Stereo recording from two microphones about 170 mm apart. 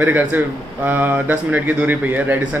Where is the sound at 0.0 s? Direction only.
10° right (ahead or behind).